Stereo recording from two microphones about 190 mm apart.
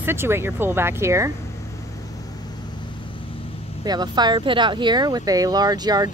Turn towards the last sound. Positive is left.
turn(degrees=-20)  # may be behind; listen again after turning